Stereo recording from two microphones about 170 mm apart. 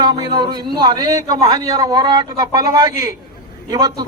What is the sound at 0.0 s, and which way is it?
A man's voice, 25° right (ahead or behind).